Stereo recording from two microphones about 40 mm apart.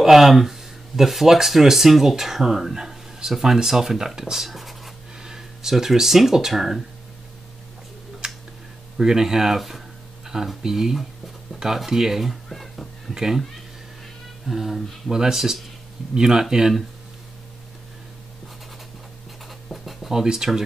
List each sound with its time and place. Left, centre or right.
0.0 s speech: centre
4.5 s writing: centre
5.2 s speech: centre
8.2 s tick: centre
8.9 s a sound: centre
10.6 s speech: centre
12.4 s music: centre
13.1 s speech: centre
14.5 s speech: centre
19.7 s a sound: centre
20.1 s speech: centre